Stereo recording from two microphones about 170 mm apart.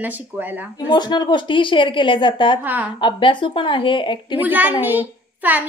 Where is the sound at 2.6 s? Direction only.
10° right (ahead or behind).